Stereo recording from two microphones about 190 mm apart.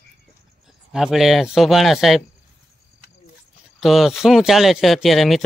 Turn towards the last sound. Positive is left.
turn(degrees=0)  # may be behind; listen again after turning